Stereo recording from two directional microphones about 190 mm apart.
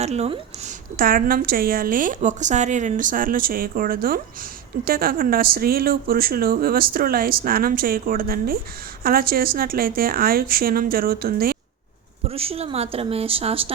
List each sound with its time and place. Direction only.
0.0 s speech: 35° right (ahead or behind)
0.9 s speech: 50° right (ahead or behind)
12.3 s speech: 30° right (ahead or behind)